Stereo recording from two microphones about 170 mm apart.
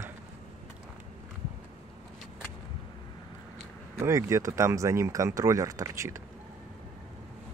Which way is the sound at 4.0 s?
15° right (ahead or behind).